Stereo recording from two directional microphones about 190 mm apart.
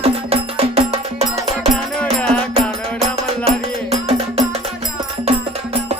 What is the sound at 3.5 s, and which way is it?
Music, 30° right (ahead or behind).